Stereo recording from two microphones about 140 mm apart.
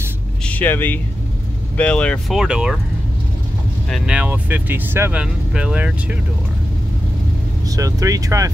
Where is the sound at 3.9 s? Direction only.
10° right (ahead or behind).